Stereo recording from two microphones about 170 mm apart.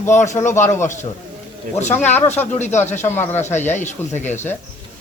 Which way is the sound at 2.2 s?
10° left (ahead or behind).